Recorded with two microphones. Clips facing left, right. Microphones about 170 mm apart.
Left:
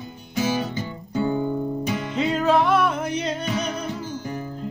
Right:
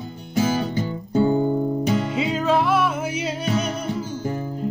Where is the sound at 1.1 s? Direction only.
40° right (ahead or behind).